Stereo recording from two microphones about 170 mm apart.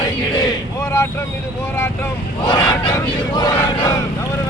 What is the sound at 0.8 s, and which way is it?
Vehicle, 20° left (ahead or behind).